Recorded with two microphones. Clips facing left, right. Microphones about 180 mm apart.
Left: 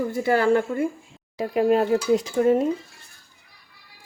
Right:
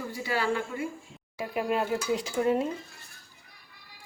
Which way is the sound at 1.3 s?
35° left (ahead or behind).